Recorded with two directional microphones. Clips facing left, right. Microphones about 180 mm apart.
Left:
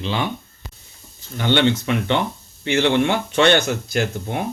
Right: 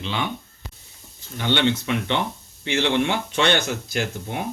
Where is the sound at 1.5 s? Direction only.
50° left (ahead or behind).